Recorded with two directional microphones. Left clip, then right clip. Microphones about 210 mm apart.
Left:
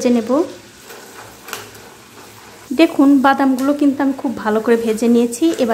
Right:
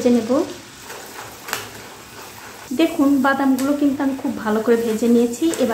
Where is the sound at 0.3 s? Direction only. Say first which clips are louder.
Left 3 dB; 30° left (ahead or behind).